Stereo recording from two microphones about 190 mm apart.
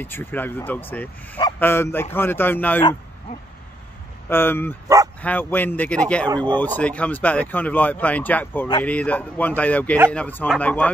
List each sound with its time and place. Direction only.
0.0 s speech: 10° left (ahead or behind)
4.3 s speech: 10° left (ahead or behind)
4.8 s speech: 15° right (ahead or behind)
5.2 s speech: 10° left (ahead or behind)